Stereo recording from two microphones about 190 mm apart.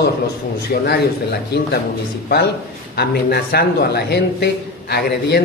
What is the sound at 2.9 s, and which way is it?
A man's voice, 55° left (ahead or behind).